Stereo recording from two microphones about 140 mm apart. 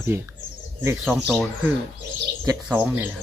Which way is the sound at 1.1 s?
5° left (ahead or behind).